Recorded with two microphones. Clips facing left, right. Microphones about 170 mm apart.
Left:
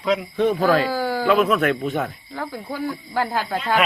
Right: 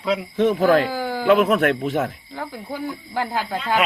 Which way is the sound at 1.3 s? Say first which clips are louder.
Right 3 dB; 60° right (ahead or behind).